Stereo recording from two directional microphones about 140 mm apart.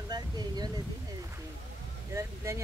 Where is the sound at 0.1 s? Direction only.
30° right (ahead or behind).